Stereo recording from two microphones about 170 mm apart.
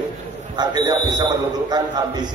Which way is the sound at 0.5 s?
25° right (ahead or behind).